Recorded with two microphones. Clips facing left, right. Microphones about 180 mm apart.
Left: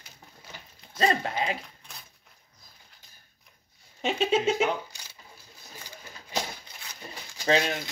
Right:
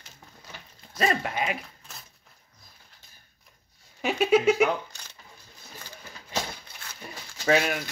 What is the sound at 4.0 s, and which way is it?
Speech, 25° left (ahead or behind).